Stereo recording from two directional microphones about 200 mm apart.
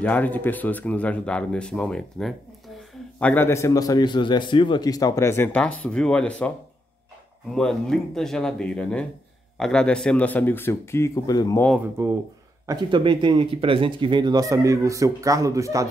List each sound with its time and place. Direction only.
0.0 s a man's voice: 10° left (ahead or behind)
7.5 s a man's voice: centre (ahead or behind); by 11.6 s 20° left (ahead or behind)
12.0 s speech: 10° right (ahead or behind)
12.6 s speech: 20° right (ahead or behind)